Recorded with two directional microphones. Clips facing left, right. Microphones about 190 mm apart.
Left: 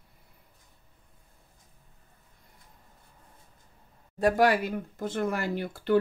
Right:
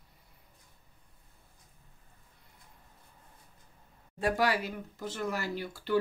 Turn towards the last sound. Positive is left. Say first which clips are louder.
# left 6 dB
turn(degrees=55)  # may be behind; listen again after turning